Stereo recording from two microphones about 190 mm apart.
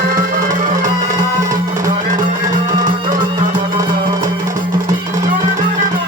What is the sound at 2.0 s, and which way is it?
Music, 45° right (ahead or behind).